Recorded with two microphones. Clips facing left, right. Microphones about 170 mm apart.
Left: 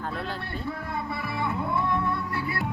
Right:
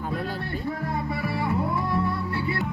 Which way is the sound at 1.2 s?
40° right (ahead or behind).